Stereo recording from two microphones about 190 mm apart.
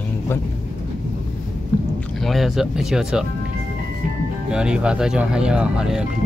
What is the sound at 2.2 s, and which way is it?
Speech, centre (ahead or behind).